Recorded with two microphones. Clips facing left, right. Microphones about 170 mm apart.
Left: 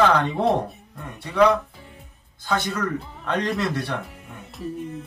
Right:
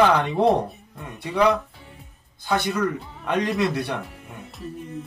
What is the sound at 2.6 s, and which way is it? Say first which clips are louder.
Speech: right 2 dB; 15° right (ahead or behind).